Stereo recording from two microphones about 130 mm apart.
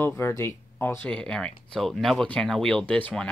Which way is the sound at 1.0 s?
5° left (ahead or behind).